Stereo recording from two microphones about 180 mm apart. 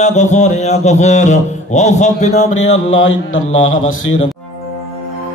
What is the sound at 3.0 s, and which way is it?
Speech, 90° left.